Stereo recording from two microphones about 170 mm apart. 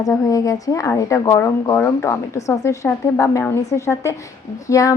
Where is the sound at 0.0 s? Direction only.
20° left (ahead or behind).